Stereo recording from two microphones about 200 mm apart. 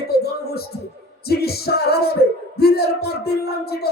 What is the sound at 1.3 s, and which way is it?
Speech, 50° left (ahead or behind).